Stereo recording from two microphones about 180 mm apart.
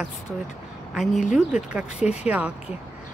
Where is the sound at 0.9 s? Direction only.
Centre (ahead or behind).